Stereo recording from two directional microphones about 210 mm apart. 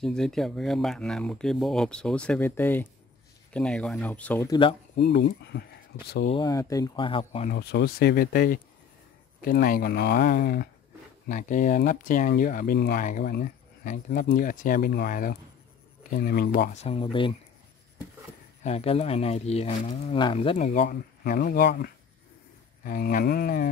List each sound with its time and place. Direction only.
0.0 s speech: centre (ahead or behind)
4.5 s speech: 25° left (ahead or behind)
4.9 s speech: 55° left (ahead or behind)
6.3 s speech: 15° left (ahead or behind)
7.5 s speech: 50° left (ahead or behind); by 17.4 s 25° left (ahead or behind)
18.6 s speech: 30° left (ahead or behind)
20.8 s speech: 50° left (ahead or behind)